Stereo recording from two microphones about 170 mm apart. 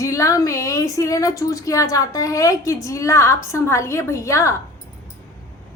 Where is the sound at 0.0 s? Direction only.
20° left (ahead or behind).